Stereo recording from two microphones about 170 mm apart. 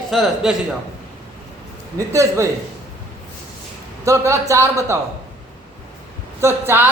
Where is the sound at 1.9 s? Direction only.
15° right (ahead or behind).